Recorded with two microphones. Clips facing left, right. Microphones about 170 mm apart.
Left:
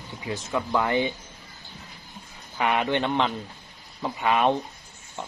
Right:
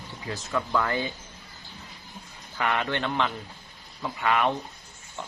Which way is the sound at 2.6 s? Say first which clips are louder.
Left 4 dB; 20° left (ahead or behind).